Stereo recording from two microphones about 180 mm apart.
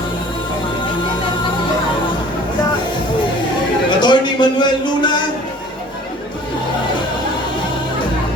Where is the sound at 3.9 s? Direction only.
25° left (ahead or behind).